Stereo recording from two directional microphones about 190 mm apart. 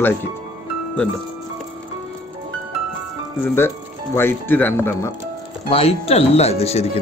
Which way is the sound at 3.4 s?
10° left (ahead or behind).